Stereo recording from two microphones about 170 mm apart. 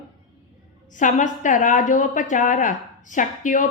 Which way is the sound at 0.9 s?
45° left (ahead or behind).